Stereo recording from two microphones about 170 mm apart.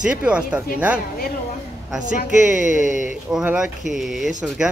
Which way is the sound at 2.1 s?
45° left (ahead or behind).